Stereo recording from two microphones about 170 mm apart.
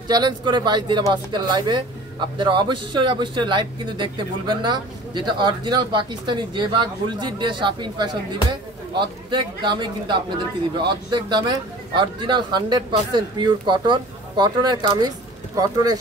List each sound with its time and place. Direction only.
0.1 s speech: 25° right (ahead or behind)
9.3 s speech: 25° right (ahead or behind)